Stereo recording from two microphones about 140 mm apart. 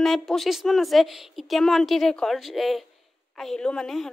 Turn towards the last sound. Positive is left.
turn(degrees=5)  # may be behind; listen again after turning